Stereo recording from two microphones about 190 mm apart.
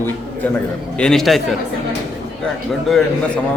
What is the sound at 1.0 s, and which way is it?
Speech, 5° left (ahead or behind).